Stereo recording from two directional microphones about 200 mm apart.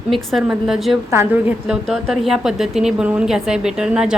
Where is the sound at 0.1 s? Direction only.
Centre (ahead or behind).